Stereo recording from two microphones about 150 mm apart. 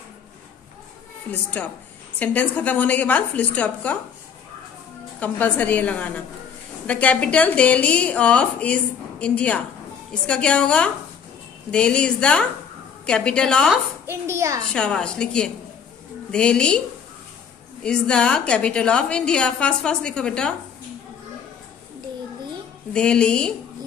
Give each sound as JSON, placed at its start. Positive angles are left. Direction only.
{"t": 1.3, "sound": "a woman's voice", "side_deg": 10}
{"t": 5.2, "sound": "a woman's voice", "side_deg": 10}
{"t": 14.0, "sound": "a child's voice", "side_deg": -15}
{"t": 14.7, "sound": "a woman's voice", "side_deg": 5}
{"t": 17.8, "sound": "a woman's voice", "side_deg": 5}
{"t": 22.9, "sound": "a woman's voice", "side_deg": 5}